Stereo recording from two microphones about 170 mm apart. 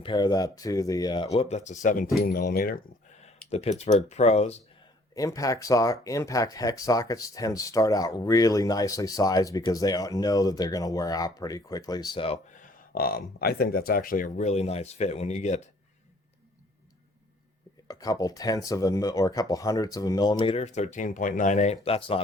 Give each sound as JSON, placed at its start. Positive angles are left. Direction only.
{"t": 0.0, "sound": "speech", "side_deg": 25}
{"t": 1.3, "sound": "speech", "side_deg": 40}
{"t": 2.2, "sound": "speech", "side_deg": 65}
{"t": 3.2, "sound": "speech", "side_deg": 40}
{"t": 5.1, "sound": "speech", "side_deg": 20}
{"t": 12.6, "sound": "speech", "side_deg": 60}
{"t": 17.8, "sound": "speech", "side_deg": 20}